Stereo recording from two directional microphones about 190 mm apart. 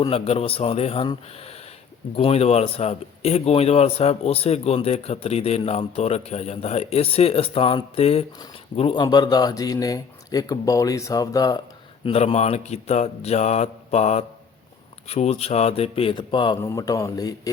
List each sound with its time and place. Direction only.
0.0 s a man's voice: 30° left (ahead or behind)
12.0 s a man's voice: 35° left (ahead or behind)